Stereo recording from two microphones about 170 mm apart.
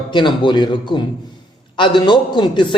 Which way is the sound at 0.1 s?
25° left (ahead or behind).